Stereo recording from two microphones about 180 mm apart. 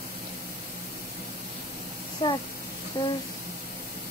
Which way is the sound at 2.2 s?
25° left (ahead or behind).